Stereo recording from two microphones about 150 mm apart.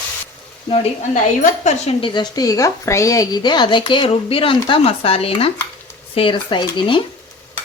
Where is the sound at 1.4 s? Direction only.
50° left (ahead or behind).